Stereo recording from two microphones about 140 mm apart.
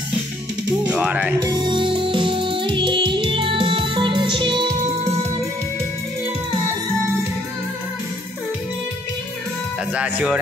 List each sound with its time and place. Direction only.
0.8 s music: 10° right (ahead or behind)
1.4 s music: 30° right (ahead or behind)
9.9 s speech: 10° right (ahead or behind)